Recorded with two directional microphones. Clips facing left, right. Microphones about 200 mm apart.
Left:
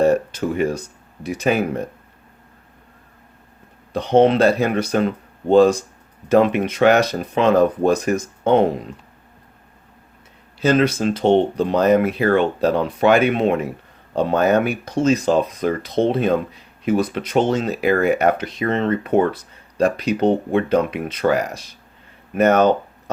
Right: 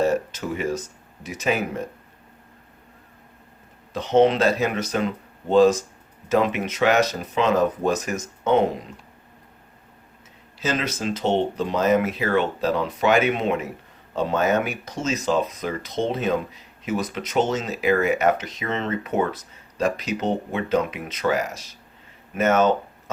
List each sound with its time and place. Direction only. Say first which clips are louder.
0.0 s a sound: left 5 dB; 55° left (ahead or behind)
1.2 s speech: left 5 dB; 60° left (ahead or behind)
3.9 s speech: left 3 dB; 55° left (ahead or behind)
10.6 s speech: left 9 dB; 55° left (ahead or behind)